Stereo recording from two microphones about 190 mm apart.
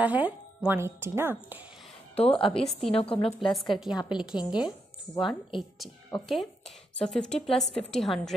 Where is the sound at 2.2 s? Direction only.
30° left (ahead or behind).